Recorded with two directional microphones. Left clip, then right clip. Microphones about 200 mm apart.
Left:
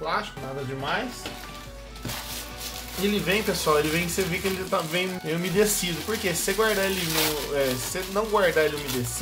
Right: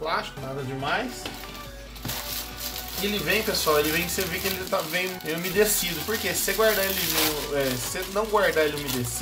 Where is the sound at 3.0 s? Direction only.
15° left (ahead or behind).